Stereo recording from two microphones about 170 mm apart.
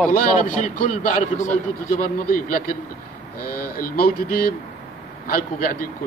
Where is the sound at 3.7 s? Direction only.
60° left (ahead or behind).